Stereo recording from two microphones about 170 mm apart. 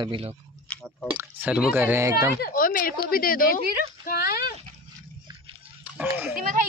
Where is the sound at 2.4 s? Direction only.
55° left (ahead or behind).